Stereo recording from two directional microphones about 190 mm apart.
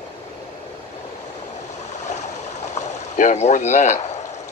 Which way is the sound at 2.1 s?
40° left (ahead or behind).